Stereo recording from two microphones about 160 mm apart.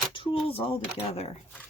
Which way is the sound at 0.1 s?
30° left (ahead or behind).